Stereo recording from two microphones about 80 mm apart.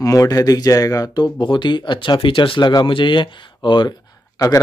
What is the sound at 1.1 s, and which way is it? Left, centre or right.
Speech, left.